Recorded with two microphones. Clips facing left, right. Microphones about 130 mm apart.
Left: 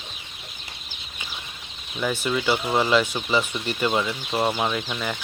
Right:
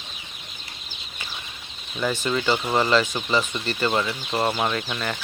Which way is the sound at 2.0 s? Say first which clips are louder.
Even; 10° left (ahead or behind).